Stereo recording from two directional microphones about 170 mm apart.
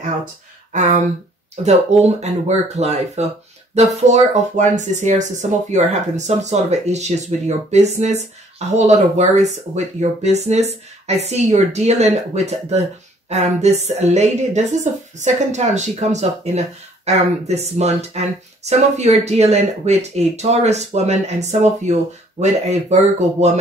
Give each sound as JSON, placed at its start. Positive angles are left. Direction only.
{"t": 0.7, "sound": "speech", "side_deg": -45}